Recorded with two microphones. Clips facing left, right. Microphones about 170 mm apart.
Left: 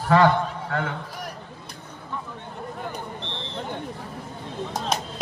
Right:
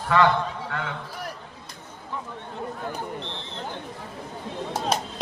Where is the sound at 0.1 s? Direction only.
35° left (ahead or behind).